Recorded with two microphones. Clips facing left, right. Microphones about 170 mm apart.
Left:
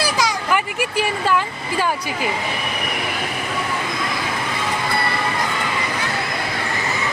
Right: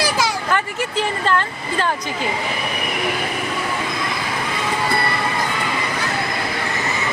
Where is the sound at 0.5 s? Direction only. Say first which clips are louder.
Left 1 dB; 10° left (ahead or behind).